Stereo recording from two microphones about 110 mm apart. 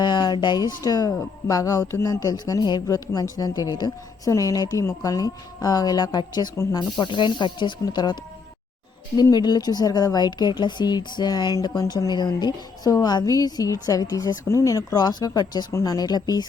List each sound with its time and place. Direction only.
0.0 s speech: 40° left (ahead or behind)
9.3 s speech: 40° left (ahead or behind)